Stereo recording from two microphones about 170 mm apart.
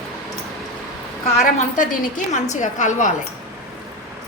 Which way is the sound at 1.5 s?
50° left (ahead or behind).